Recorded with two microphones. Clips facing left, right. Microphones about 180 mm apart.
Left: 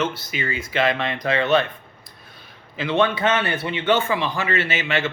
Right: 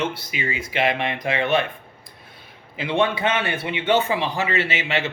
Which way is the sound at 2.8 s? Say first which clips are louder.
Left 1 dB; 25° right (ahead or behind).